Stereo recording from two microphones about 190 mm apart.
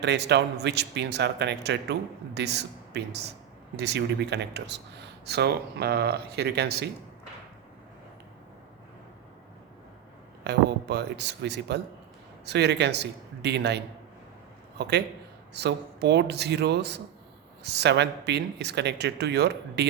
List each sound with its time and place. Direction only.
0.3 s speech: 65° right (ahead or behind)
10.4 s speech: 60° right (ahead or behind)